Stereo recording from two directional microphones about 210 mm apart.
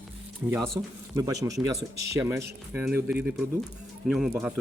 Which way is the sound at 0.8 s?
10° right (ahead or behind).